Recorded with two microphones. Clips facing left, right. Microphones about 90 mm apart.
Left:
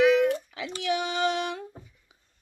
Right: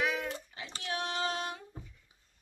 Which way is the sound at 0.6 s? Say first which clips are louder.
Left 9 dB; 90° left.